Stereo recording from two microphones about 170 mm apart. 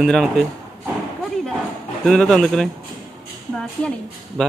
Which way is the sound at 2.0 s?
Centre (ahead or behind).